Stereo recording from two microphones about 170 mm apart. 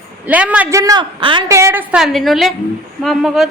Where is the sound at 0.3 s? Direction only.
10° right (ahead or behind).